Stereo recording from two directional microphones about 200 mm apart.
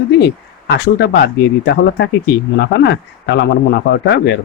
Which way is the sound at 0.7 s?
55° left (ahead or behind).